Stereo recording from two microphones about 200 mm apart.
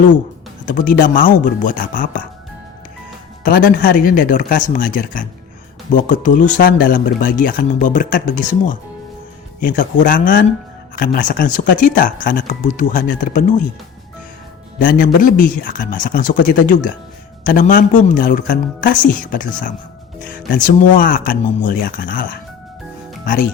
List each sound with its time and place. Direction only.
0.6 s speech: 40° left (ahead or behind)
3.4 s speech: 45° left (ahead or behind)
9.6 s speech: 40° left (ahead or behind)
14.8 s speech: 45° left (ahead or behind)